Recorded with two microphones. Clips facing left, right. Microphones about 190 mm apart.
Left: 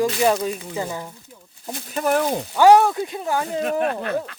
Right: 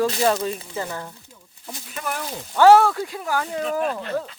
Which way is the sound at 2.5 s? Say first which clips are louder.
Even; 15° left (ahead or behind).